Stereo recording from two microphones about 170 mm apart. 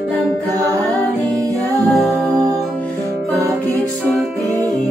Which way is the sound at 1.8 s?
Centre (ahead or behind).